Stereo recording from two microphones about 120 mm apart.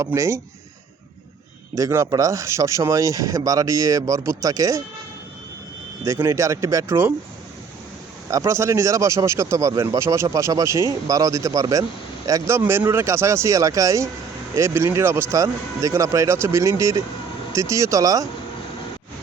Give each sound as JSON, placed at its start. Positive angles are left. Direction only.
{"t": 0.0, "sound": "speech", "side_deg": -25}
{"t": 1.7, "sound": "speech", "side_deg": -25}
{"t": 6.1, "sound": "speech", "side_deg": -25}
{"t": 8.3, "sound": "speech", "side_deg": -25}